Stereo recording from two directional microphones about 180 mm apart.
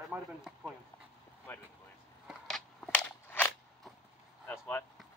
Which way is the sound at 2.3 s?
Centre (ahead or behind).